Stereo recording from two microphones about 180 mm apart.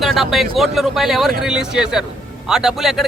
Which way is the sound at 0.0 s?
Centre (ahead or behind).